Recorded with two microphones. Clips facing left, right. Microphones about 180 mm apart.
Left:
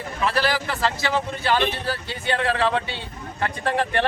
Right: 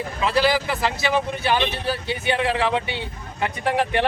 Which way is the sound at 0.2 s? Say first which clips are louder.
Right 3 dB; 15° right (ahead or behind).